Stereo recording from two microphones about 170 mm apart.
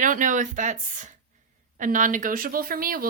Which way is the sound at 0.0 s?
50° right (ahead or behind).